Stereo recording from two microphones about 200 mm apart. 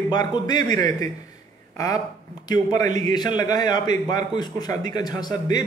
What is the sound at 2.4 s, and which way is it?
Speech, 20° left (ahead or behind).